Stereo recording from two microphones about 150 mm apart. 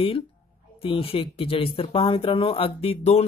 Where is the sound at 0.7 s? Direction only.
40° left (ahead or behind).